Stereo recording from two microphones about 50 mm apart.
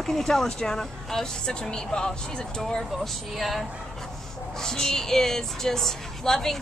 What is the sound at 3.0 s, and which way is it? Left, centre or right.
Speech, centre.